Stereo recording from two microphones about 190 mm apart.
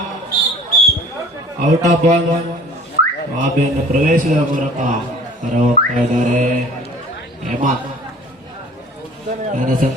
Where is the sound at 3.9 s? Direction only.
45° right (ahead or behind).